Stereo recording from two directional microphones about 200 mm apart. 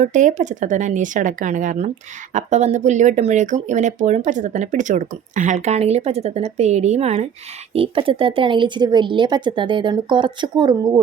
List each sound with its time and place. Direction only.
0.0 s speech: 40° right (ahead or behind); by 11.0 s 20° right (ahead or behind)